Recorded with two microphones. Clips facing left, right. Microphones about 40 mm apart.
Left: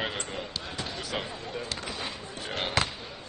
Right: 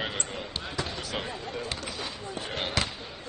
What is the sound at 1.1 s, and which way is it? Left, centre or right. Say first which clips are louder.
Basketball bounce: even; centre.